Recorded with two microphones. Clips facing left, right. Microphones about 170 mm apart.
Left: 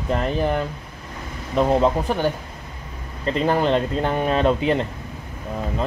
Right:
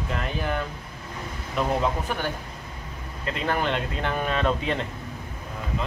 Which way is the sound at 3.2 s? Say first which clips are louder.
Left 7 dB; 35° left (ahead or behind).